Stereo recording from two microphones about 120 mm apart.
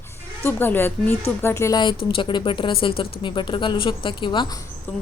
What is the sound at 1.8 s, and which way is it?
Speech, 45° left (ahead or behind).